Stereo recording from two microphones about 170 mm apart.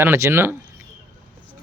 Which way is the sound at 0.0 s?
15° right (ahead or behind).